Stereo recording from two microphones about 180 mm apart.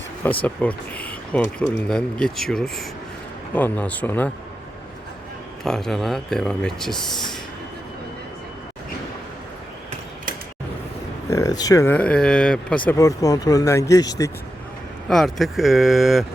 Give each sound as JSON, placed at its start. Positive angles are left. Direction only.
{"t": 0.4, "sound": "speech", "side_deg": 5}
{"t": 5.6, "sound": "speech", "side_deg": 5}
{"t": 11.3, "sound": "speech", "side_deg": 20}
{"t": 15.1, "sound": "speech", "side_deg": 0}